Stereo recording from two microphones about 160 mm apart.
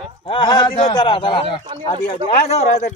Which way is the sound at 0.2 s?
30° left (ahead or behind).